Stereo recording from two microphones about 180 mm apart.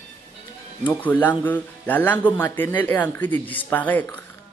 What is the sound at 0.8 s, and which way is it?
Speech, 10° left (ahead or behind).